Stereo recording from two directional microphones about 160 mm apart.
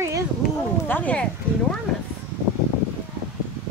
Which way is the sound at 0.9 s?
10° left (ahead or behind).